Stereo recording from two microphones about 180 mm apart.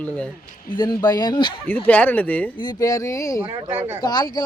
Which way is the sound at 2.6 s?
20° left (ahead or behind).